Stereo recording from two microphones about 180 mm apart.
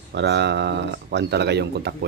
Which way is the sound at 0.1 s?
70° right (ahead or behind).